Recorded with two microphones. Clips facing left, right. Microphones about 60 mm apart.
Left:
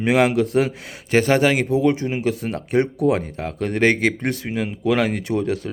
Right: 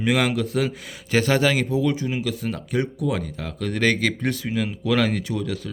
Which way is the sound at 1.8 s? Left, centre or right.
Left.